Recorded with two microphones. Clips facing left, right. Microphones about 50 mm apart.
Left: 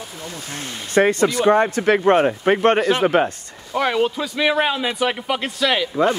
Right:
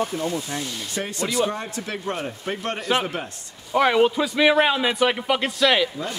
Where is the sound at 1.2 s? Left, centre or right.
Left.